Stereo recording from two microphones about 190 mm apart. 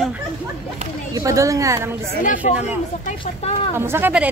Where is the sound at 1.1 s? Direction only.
15° right (ahead or behind).